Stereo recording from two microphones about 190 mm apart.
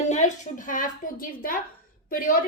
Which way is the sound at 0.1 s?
40° left (ahead or behind).